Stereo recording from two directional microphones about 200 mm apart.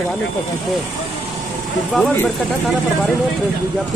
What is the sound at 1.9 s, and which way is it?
Speech, 5° left (ahead or behind).